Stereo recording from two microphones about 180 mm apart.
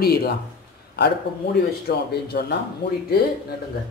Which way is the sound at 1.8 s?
60° left (ahead or behind).